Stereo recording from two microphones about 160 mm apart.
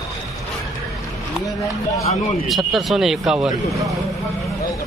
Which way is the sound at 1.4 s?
20° left (ahead or behind).